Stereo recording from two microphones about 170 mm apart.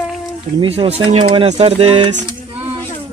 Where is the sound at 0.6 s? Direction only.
35° right (ahead or behind).